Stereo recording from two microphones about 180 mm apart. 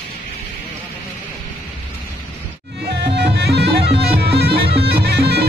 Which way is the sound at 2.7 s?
70° right (ahead or behind).